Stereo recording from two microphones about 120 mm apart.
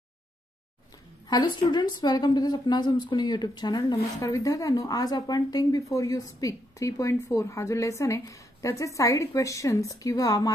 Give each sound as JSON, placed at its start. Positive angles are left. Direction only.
{"t": 1.3, "sound": "a woman's voice", "side_deg": 35}